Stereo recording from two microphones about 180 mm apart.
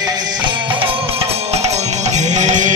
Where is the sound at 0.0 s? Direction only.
20° right (ahead or behind).